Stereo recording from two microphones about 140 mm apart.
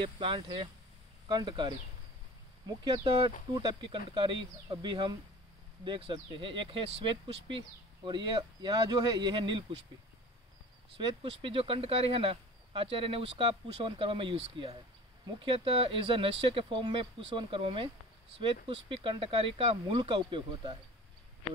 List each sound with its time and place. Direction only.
0.0 s speech: 35° right (ahead or behind)
11.0 s speech: 40° right (ahead or behind)